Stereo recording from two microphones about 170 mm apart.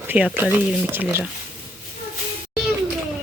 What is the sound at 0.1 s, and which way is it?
Speech, 10° right (ahead or behind).